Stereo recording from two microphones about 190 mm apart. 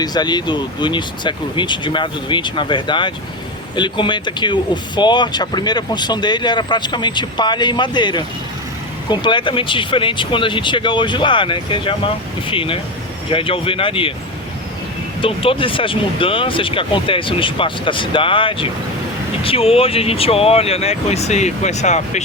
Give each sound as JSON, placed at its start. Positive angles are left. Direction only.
{"t": 0.0, "sound": "speech", "side_deg": 20}
{"t": 15.2, "sound": "speech", "side_deg": 30}